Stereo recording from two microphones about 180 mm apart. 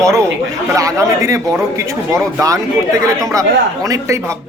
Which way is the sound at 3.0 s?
15° right (ahead or behind).